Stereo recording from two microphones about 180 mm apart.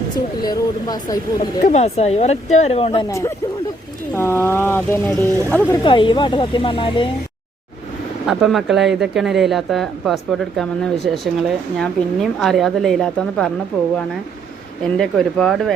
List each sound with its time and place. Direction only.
0.4 s speech: 20° left (ahead or behind)
1.6 s speech: 40° left (ahead or behind); by 5.8 s 10° left (ahead or behind)
5.8 s speech: 25° left (ahead or behind)
8.3 s speech: centre (ahead or behind)
14.9 s speech: centre (ahead or behind)